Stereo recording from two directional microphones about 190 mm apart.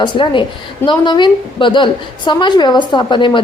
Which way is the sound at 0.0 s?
25° left (ahead or behind).